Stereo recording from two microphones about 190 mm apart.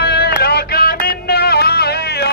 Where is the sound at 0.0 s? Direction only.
60° left (ahead or behind).